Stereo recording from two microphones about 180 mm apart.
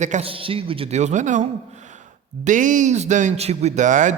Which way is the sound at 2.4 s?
45° right (ahead or behind).